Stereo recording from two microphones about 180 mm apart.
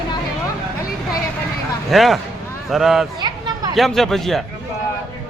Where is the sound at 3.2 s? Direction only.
20° right (ahead or behind).